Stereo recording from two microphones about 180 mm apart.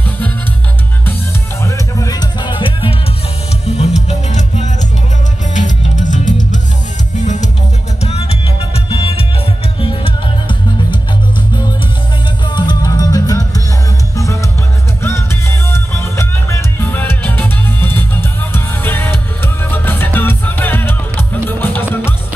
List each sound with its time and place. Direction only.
1.6 s music: 20° left (ahead or behind); by 6.6 s 45° left (ahead or behind)
8.0 s music: 35° left (ahead or behind)
12.5 s music: 25° left (ahead or behind)
15.7 s music: 15° left (ahead or behind)